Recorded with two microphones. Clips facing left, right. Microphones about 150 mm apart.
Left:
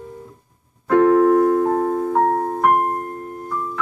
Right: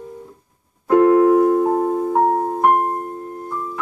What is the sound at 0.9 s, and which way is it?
Piano, 5° right (ahead or behind).